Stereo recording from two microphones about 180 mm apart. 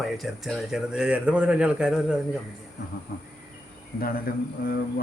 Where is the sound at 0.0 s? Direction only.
Centre (ahead or behind).